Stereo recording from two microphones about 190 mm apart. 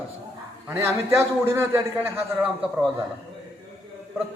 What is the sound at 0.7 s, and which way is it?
A man's voice, 15° right (ahead or behind).